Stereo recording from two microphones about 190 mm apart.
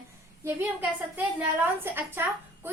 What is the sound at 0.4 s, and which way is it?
A woman's voice, 10° right (ahead or behind).